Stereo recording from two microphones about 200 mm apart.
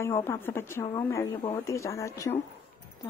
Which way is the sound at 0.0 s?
15° left (ahead or behind).